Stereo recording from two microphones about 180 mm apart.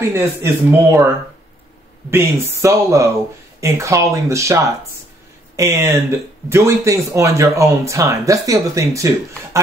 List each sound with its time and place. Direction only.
0.1 s speech: 15° right (ahead or behind)
2.0 s speech: 15° right (ahead or behind)
5.6 s speech: 15° right (ahead or behind)